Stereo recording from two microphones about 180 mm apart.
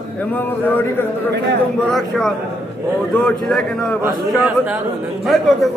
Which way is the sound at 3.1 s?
5° left (ahead or behind).